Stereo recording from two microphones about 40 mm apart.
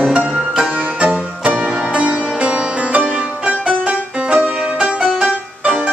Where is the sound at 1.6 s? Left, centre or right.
Centre.